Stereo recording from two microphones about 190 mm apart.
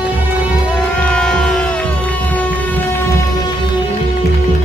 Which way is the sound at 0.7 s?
5° left (ahead or behind).